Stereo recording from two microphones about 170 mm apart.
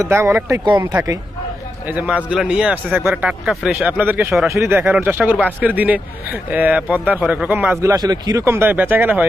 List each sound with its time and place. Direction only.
0.1 s a man's voice: 15° right (ahead or behind)